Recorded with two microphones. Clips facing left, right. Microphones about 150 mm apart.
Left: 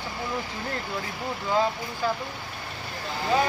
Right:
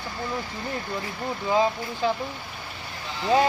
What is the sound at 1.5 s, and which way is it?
Speech, 15° right (ahead or behind).